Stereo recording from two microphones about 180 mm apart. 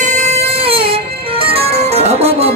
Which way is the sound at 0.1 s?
40° right (ahead or behind).